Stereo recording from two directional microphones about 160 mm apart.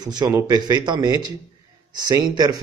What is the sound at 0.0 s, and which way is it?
Speech, 25° right (ahead or behind).